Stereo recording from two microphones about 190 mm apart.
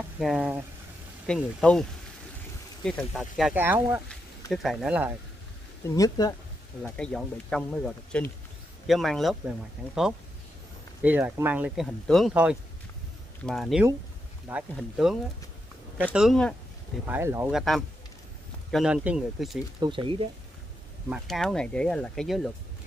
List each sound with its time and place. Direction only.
0.2 s speech: 5° right (ahead or behind)
1.2 s speech: 5° left (ahead or behind)
5.9 s speech: 20° left (ahead or behind)
6.8 s speech: 5° left (ahead or behind)
11.0 s speech: 10° right (ahead or behind)
17.0 s speech: 15° right (ahead or behind)
17.6 s speech: centre (ahead or behind)
19.8 s speech: 25° right (ahead or behind)
21.1 s speech: centre (ahead or behind)